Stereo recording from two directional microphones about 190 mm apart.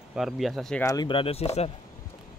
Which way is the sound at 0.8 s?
25° left (ahead or behind).